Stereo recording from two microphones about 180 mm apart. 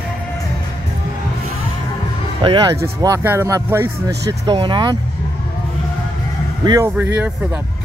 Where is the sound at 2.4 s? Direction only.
25° right (ahead or behind).